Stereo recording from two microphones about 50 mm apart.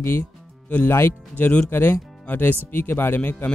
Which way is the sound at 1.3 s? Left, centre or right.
Left.